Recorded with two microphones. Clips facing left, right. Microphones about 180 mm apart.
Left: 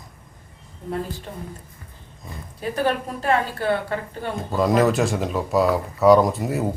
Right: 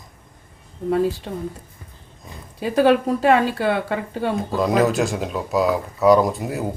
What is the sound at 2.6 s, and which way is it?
Speech, 90° right.